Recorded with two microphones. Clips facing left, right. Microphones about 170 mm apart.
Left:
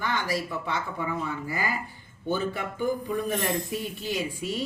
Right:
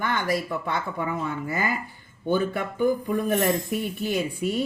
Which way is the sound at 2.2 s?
55° right (ahead or behind).